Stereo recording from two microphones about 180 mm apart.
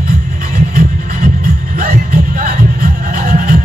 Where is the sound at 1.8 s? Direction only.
55° right (ahead or behind).